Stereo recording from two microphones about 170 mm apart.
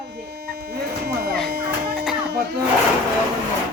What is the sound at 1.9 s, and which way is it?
Music, 5° right (ahead or behind).